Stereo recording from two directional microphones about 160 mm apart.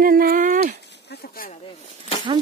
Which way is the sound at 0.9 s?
85° left.